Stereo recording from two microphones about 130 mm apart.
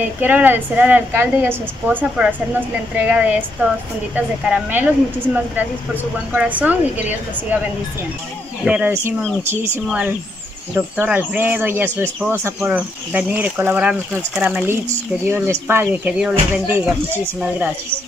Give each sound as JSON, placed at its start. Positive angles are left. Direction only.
{"t": 0.2, "sound": "speech", "side_deg": -15}
{"t": 6.3, "sound": "speech", "side_deg": -10}
{"t": 8.6, "sound": "speech", "side_deg": -10}